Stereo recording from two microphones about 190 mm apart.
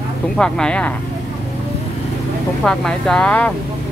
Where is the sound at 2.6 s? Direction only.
5° left (ahead or behind).